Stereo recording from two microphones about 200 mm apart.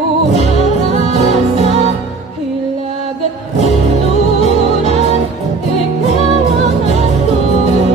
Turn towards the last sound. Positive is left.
turn(degrees=-35)  # may be behind; listen again after turning